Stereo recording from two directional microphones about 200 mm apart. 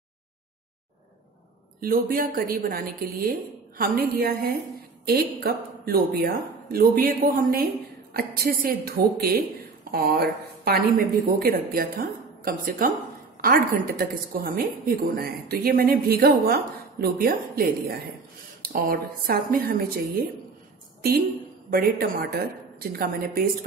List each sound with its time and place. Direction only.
1.8 s a woman's voice: 45° right (ahead or behind)
21.6 s a woman's voice: 45° right (ahead or behind)